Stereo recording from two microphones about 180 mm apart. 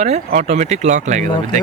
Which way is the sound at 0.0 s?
40° right (ahead or behind).